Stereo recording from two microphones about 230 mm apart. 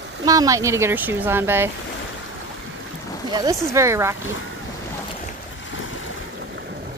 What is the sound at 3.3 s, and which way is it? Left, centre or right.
Speech, centre.